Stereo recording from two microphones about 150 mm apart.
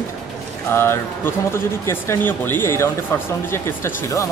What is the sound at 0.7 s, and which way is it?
Speech, 15° left (ahead or behind).